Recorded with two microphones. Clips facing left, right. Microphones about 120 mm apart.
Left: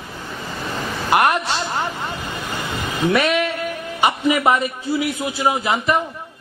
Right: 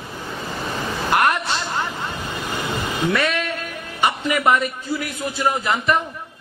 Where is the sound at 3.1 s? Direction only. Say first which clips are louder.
Left 4 dB; 15° left (ahead or behind).